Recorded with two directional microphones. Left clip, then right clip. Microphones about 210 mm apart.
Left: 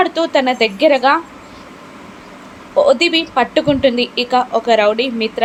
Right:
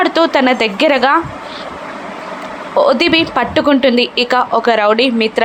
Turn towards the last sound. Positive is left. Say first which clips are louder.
# right 4 dB
turn(degrees=-15)  # may be behind; listen again after turning